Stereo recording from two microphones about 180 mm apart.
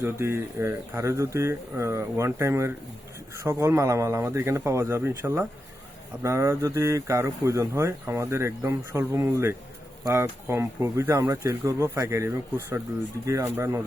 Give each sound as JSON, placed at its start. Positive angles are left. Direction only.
{"t": 0.0, "sound": "speech", "side_deg": -15}